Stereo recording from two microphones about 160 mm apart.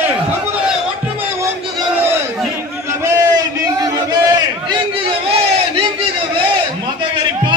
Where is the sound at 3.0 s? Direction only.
25° right (ahead or behind).